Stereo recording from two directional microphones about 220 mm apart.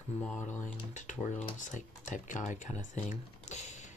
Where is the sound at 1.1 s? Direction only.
35° left (ahead or behind).